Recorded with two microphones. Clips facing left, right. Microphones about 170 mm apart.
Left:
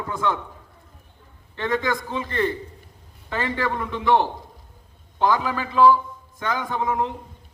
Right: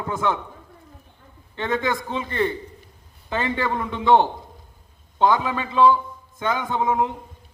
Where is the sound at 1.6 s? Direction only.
25° right (ahead or behind).